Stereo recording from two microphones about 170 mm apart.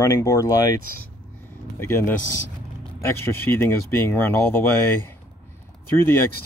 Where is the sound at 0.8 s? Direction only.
55° right (ahead or behind).